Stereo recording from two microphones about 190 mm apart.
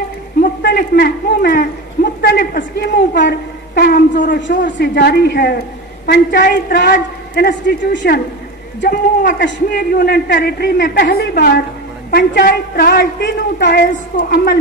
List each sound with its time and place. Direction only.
0.4 s a sound: 55° left (ahead or behind)
2.2 s a woman's voice: 55° left (ahead or behind)
4.4 s a man's voice: 70° left (ahead or behind); by 14.6 s 50° left (ahead or behind)